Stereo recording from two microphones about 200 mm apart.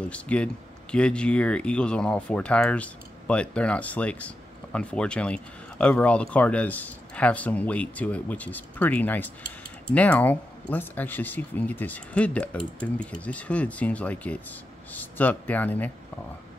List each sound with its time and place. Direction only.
0.1 s speech: 5° left (ahead or behind)